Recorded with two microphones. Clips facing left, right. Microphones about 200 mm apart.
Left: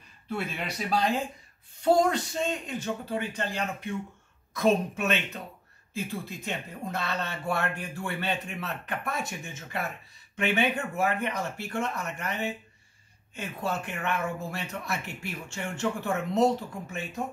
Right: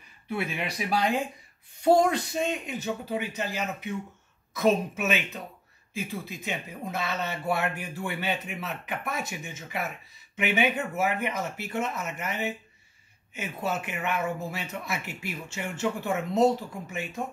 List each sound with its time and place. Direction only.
0.3 s speech: 10° right (ahead or behind)
13.7 s speech: 5° right (ahead or behind)